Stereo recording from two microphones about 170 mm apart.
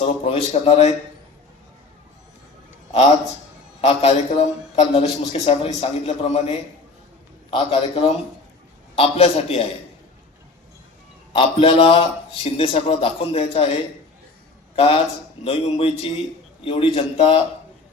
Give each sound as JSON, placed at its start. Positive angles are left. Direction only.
{"t": 0.0, "sound": "a man's voice", "side_deg": 35}
{"t": 3.8, "sound": "a man's voice", "side_deg": 35}
{"t": 7.5, "sound": "a man's voice", "side_deg": 35}
{"t": 11.3, "sound": "a man's voice", "side_deg": 30}
{"t": 14.8, "sound": "a man's voice", "side_deg": 35}